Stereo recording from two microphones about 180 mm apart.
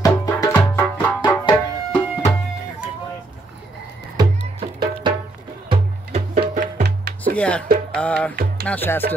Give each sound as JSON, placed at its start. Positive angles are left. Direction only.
{"t": 0.0, "sound": "music", "side_deg": 20}
{"t": 1.0, "sound": "music", "side_deg": 10}
{"t": 1.4, "sound": "music", "side_deg": 20}
{"t": 4.2, "sound": "music", "side_deg": -25}
{"t": 5.7, "sound": "music", "side_deg": -40}
{"t": 6.8, "sound": "music", "side_deg": -65}
{"t": 7.3, "sound": "music", "side_deg": 5}
{"t": 8.6, "sound": "speech", "side_deg": 10}